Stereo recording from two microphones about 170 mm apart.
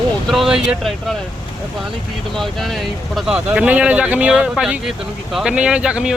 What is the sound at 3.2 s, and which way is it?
Speech, 5° right (ahead or behind).